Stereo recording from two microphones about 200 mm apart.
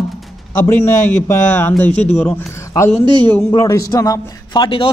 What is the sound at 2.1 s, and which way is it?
A man's voice, 10° left (ahead or behind).